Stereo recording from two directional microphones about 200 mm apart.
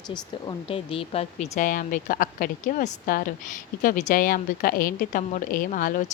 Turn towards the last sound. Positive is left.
turn(degrees=40)  # may be behind; listen again after turning